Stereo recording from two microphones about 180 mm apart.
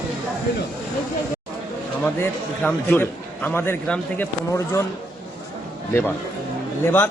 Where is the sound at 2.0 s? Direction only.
10° left (ahead or behind).